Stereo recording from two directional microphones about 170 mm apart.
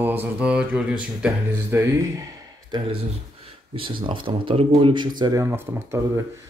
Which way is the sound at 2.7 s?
25° right (ahead or behind).